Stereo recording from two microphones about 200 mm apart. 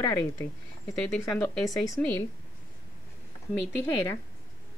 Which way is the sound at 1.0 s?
5° left (ahead or behind).